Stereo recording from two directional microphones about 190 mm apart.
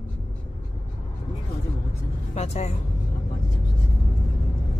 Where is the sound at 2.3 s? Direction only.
35° left (ahead or behind).